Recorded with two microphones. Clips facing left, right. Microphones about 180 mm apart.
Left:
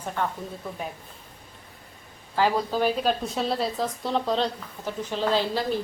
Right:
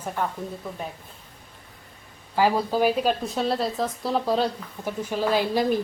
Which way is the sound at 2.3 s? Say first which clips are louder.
Right 2 dB; 10° right (ahead or behind).